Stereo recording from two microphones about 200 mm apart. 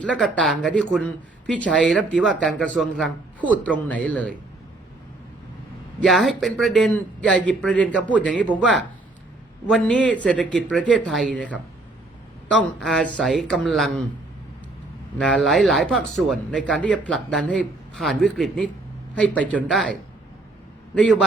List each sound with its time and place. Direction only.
0.0 s speech: 5° left (ahead or behind)
6.0 s speech: centre (ahead or behind)
15.2 s speech: 5° left (ahead or behind)
20.9 s speech: 5° left (ahead or behind)